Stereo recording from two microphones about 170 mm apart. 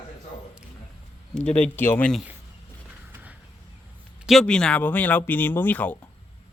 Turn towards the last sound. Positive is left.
turn(degrees=10)  # may be behind; listen again after turning